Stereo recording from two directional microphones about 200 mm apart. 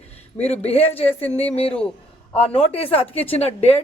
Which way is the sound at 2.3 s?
30° left (ahead or behind).